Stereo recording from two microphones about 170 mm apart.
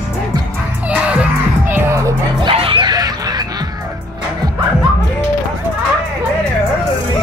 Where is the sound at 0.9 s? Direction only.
10° right (ahead or behind).